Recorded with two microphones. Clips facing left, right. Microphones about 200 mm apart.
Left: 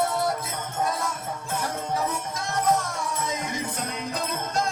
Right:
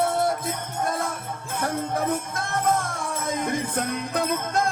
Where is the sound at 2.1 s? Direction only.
55° right (ahead or behind).